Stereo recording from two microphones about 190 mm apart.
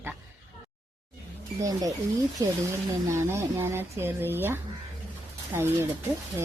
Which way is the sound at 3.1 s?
15° right (ahead or behind).